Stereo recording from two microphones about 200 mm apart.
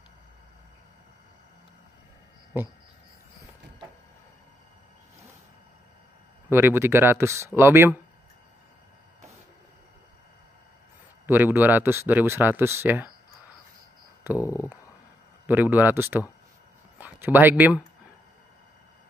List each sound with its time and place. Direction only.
6.5 s speech: 10° right (ahead or behind)
11.2 s speech: 10° right (ahead or behind)
14.4 s speech: 15° left (ahead or behind)
15.4 s speech: 10° right (ahead or behind)